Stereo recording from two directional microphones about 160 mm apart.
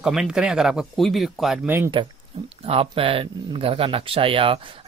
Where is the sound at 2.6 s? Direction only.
35° right (ahead or behind).